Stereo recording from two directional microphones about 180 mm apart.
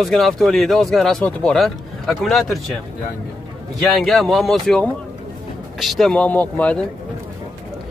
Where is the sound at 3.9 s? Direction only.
Centre (ahead or behind).